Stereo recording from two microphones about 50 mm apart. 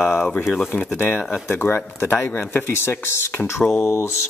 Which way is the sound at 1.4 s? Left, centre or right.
Left.